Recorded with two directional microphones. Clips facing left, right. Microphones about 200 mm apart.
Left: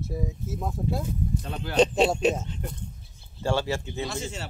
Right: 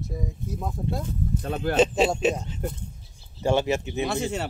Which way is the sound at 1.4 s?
45° right (ahead or behind).